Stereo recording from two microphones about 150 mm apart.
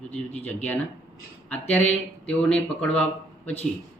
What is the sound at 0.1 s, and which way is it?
Speech, 10° left (ahead or behind).